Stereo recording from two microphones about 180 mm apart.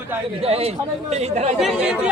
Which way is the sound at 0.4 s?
35° right (ahead or behind).